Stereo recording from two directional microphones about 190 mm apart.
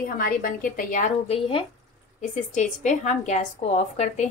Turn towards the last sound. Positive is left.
turn(degrees=35)  # may be behind; listen again after turning